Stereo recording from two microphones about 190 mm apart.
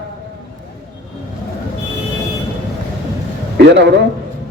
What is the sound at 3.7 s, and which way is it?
Speech, 65° right (ahead or behind).